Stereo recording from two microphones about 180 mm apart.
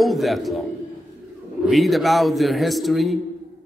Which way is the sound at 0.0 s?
Centre (ahead or behind).